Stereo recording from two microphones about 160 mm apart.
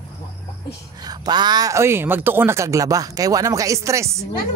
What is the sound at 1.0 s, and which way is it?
Speech, 25° right (ahead or behind).